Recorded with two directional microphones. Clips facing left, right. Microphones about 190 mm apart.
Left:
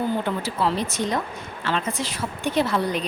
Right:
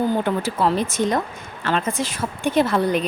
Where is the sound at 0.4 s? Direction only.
50° right (ahead or behind).